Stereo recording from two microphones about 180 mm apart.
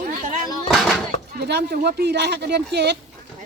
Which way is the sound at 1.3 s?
65° right (ahead or behind).